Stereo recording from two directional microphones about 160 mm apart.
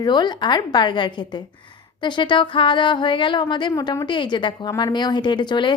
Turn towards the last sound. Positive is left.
turn(degrees=30)  # may be behind; listen again after turning